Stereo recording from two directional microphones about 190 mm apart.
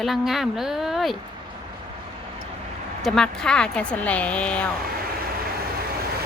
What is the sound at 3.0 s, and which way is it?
Speech, centre (ahead or behind).